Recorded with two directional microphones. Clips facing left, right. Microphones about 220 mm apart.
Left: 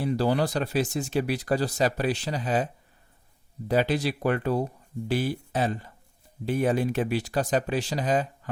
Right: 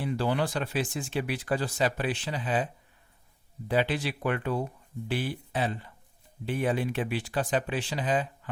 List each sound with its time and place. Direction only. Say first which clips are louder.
0.0 s speech: left 4 dB; 40° left (ahead or behind)
3.7 s speech: left 3 dB; 40° left (ahead or behind)